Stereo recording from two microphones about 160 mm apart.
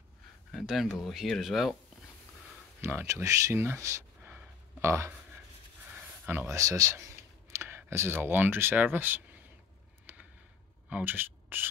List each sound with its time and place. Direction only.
0.5 s speech: centre (ahead or behind)
2.8 s speech: 15° right (ahead or behind)
10.1 s a sound: 10° right (ahead or behind)
10.9 s rub: 10° right (ahead or behind)